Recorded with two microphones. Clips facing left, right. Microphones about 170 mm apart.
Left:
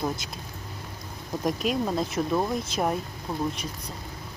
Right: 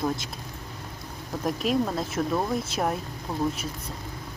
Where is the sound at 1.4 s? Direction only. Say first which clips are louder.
Right 1 dB; centre (ahead or behind).